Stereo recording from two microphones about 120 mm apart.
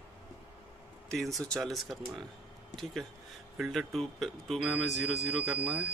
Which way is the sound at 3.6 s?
Centre (ahead or behind).